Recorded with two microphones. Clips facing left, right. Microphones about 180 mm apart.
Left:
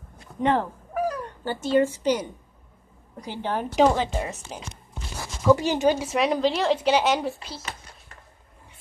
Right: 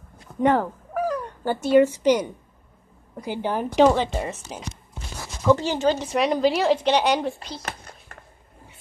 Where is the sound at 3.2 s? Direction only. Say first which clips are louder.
Right 3 dB; 10° right (ahead or behind).